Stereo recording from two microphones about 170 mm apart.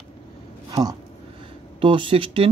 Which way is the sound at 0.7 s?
25° right (ahead or behind).